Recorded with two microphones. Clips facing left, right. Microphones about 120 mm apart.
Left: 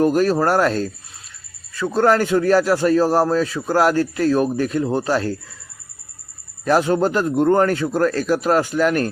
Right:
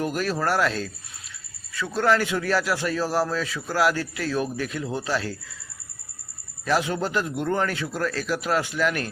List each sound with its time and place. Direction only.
0.0 s speech: 40° left (ahead or behind)
6.7 s speech: 45° left (ahead or behind)